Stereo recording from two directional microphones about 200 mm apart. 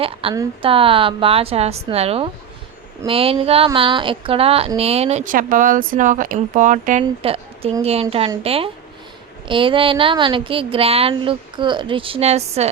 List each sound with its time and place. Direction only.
0.0 s speech: 30° right (ahead or behind)